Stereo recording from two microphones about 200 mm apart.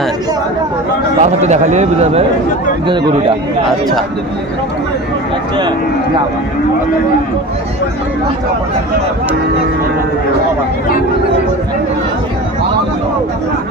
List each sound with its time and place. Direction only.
1.2 s a man's voice: 35° right (ahead or behind)